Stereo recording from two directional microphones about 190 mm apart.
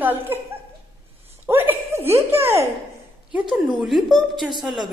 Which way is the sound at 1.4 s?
10° right (ahead or behind).